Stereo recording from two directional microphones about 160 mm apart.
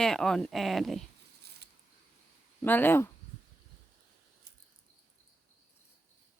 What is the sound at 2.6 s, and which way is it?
Speech, 10° left (ahead or behind).